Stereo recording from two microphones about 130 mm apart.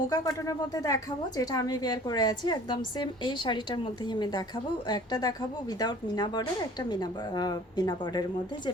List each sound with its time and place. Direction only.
0.1 s a woman's voice: 30° left (ahead or behind)